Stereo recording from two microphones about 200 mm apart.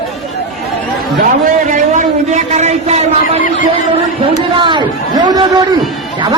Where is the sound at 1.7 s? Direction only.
40° right (ahead or behind).